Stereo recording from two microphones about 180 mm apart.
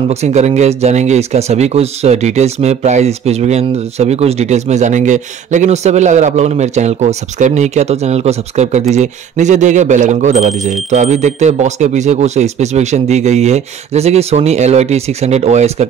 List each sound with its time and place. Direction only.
0.1 s speech: 40° right (ahead or behind)